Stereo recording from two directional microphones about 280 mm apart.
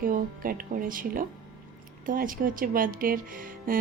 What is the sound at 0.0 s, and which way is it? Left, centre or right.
Music, right.